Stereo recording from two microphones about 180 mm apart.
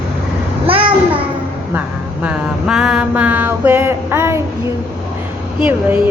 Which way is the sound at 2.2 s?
5° right (ahead or behind).